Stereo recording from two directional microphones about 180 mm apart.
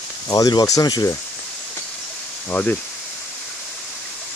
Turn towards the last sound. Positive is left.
turn(degrees=5)  # may be behind; listen again after turning